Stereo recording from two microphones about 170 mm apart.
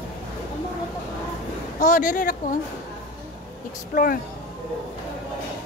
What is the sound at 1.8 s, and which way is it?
Speech, 50° left (ahead or behind).